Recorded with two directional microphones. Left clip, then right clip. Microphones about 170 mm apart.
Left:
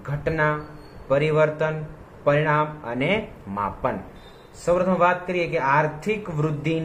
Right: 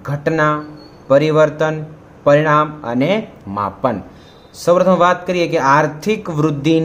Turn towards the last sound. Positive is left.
turn(degrees=-35)  # may be behind; listen again after turning